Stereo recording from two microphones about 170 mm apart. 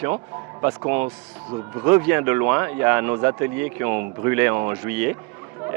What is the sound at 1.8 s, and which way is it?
Speech, 15° right (ahead or behind).